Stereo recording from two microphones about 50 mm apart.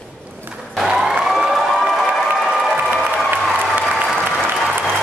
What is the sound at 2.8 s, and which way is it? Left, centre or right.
Applause, right.